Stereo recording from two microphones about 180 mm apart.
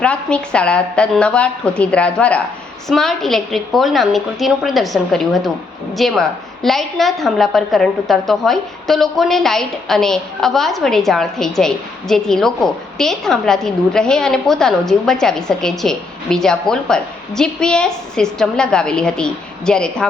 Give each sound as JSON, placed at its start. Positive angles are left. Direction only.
{"t": 0.0, "sound": "a woman's voice", "side_deg": 5}